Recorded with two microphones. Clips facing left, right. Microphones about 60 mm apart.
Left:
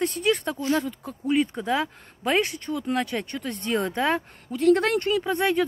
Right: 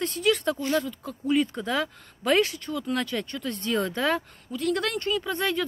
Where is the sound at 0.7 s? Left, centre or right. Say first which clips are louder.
Even; left.